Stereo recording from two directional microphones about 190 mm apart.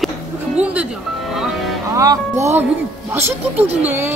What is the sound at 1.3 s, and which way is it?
Music, centre (ahead or behind).